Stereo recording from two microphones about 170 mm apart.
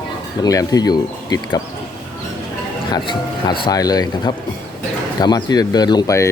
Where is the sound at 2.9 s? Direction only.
25° left (ahead or behind).